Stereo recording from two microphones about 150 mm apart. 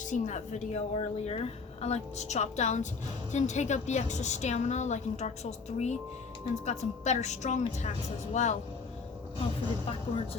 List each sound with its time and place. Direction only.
0.0 s speech: 55° left (ahead or behind)